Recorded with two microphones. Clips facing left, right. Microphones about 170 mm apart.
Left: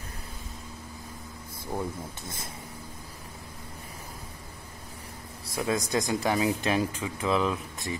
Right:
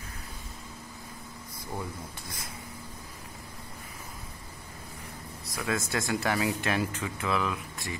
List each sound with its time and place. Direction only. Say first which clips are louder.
2.2 s speech: left 3 dB; 25° left (ahead or behind)
5.5 s a man's voice: left 3 dB; 25° left (ahead or behind)
5.8 s speech: left 3 dB; 15° left (ahead or behind)
7.2 s speech: left 4 dB; 25° left (ahead or behind)